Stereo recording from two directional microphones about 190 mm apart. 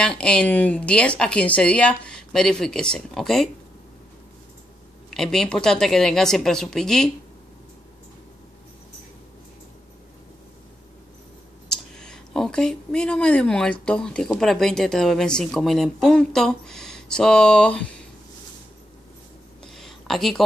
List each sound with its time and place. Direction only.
0.0 s speech: 5° left (ahead or behind)
5.1 s speech: centre (ahead or behind)
11.7 s speech: 5° left (ahead or behind)
19.6 s a sound: centre (ahead or behind)